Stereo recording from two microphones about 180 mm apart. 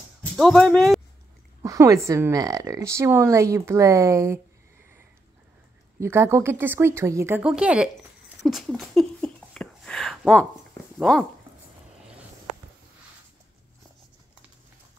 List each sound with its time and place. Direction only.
0.4 s speech: 5° left (ahead or behind)
1.6 s a woman's voice: 20° right (ahead or behind)
5.9 s a woman's voice: 15° right (ahead or behind)
8.5 s a sound: centre (ahead or behind)
11.0 s speech: 5° left (ahead or behind)